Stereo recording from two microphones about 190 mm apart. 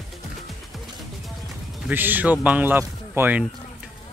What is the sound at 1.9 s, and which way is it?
Speech, 10° right (ahead or behind).